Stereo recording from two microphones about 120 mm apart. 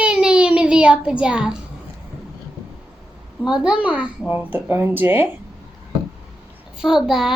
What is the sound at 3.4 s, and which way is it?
A child's voice, 5° right (ahead or behind).